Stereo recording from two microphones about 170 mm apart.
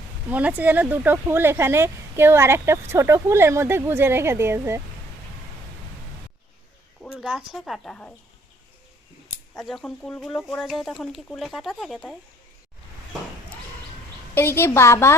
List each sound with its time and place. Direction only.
0.3 s speech: 10° right (ahead or behind)
7.0 s speech: centre (ahead or behind)
9.6 s speech: centre (ahead or behind)
14.3 s a woman's voice: 15° left (ahead or behind)